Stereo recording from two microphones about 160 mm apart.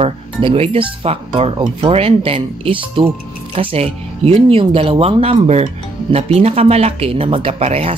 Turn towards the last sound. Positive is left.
turn(degrees=-40)  # may be behind; listen again after turning